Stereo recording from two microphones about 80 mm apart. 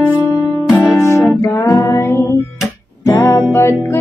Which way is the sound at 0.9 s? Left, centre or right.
Left.